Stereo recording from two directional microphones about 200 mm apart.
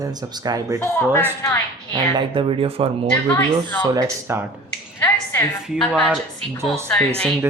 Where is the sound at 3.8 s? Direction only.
15° right (ahead or behind).